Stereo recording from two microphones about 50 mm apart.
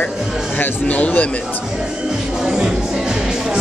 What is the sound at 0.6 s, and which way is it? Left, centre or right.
Speech, left.